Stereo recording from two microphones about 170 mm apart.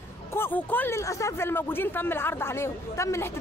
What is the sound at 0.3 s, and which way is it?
Speech, 10° left (ahead or behind).